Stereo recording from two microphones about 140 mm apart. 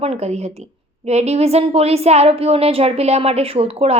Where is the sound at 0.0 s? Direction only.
50° right (ahead or behind).